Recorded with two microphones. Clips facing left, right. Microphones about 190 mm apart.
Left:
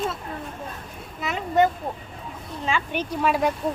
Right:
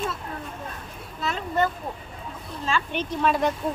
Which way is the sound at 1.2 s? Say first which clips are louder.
Left 4 dB; 15° left (ahead or behind).